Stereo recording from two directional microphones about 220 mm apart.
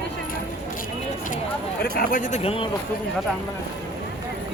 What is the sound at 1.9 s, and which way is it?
Speech, 40° left (ahead or behind).